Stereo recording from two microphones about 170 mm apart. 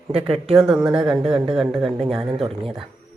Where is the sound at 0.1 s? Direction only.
35° right (ahead or behind).